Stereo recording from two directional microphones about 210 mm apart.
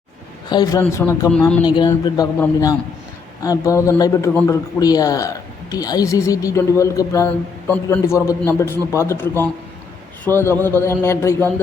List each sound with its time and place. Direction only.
0.5 s speech: 15° left (ahead or behind)
1.6 s speech: 20° left (ahead or behind)